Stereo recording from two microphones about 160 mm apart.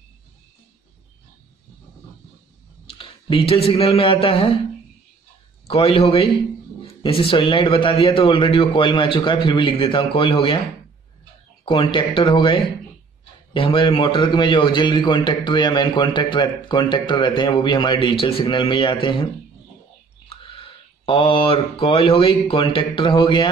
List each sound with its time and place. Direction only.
3.0 s speech: 35° left (ahead or behind)
5.7 s a man's voice: 35° left (ahead or behind)
11.6 s a man's voice: 30° left (ahead or behind)
20.2 s speech: 35° left (ahead or behind)